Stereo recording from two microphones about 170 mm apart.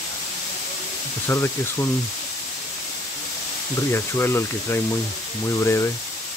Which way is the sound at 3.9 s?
15° left (ahead or behind).